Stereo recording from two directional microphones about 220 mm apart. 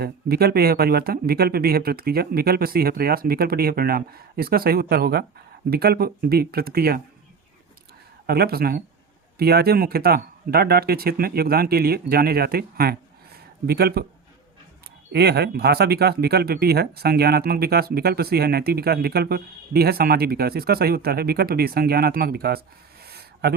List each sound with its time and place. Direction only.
0.0 s speech: 45° right (ahead or behind)
8.3 s speech: 45° right (ahead or behind)
15.1 s speech: 45° right (ahead or behind)
23.0 s a sound: 45° right (ahead or behind)